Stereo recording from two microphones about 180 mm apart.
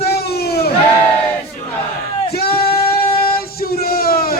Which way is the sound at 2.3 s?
60° left (ahead or behind).